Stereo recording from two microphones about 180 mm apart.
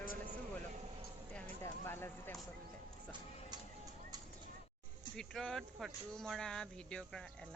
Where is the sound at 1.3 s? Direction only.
10° left (ahead or behind).